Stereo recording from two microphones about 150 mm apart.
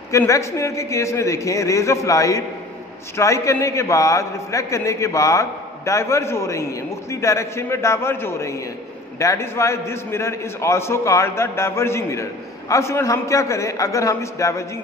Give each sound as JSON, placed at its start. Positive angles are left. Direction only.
{"t": 0.1, "sound": "a man's voice", "side_deg": 20}